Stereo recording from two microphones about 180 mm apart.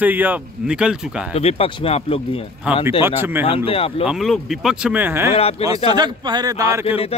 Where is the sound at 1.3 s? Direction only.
35° left (ahead or behind).